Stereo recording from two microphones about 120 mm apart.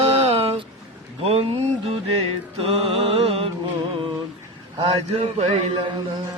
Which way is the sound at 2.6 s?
50° right (ahead or behind).